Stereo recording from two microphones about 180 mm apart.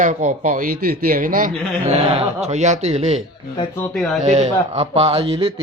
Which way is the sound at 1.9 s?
35° right (ahead or behind).